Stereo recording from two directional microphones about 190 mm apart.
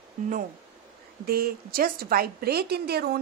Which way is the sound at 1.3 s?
55° right (ahead or behind).